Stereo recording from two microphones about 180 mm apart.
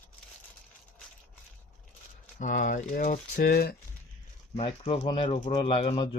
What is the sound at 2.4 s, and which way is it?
Speech, 45° left (ahead or behind).